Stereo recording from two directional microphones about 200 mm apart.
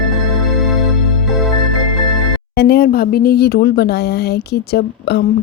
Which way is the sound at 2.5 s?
50° left (ahead or behind).